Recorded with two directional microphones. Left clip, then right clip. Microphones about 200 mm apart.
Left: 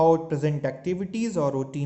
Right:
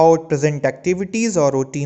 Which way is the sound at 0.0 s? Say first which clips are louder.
Right 7 dB; 35° right (ahead or behind).